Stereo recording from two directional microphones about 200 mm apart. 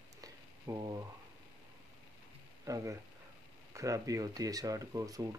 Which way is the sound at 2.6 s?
15° right (ahead or behind).